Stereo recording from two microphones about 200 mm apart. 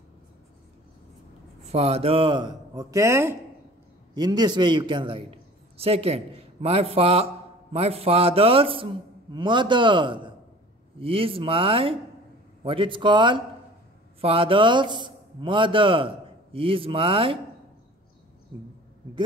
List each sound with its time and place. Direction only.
1.6 s a man's voice: 30° right (ahead or behind)